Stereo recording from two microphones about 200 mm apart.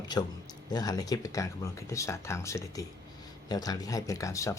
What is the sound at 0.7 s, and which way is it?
Speech, 20° left (ahead or behind).